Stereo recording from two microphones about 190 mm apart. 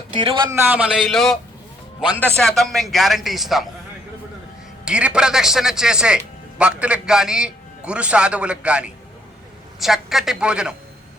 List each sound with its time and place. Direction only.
0.1 s speech: 25° right (ahead or behind)
0.5 s speech: 10° right (ahead or behind)
4.9 s speech: 5° right (ahead or behind)